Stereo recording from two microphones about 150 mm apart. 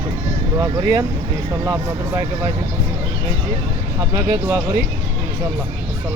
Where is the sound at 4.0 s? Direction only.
20° right (ahead or behind).